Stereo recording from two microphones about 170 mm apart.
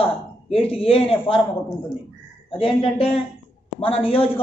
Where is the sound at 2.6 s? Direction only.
35° left (ahead or behind).